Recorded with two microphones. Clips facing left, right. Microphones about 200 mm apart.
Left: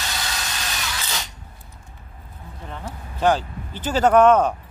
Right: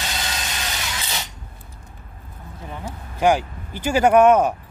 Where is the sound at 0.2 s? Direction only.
20° right (ahead or behind).